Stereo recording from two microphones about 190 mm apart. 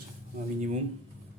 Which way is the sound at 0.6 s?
40° right (ahead or behind).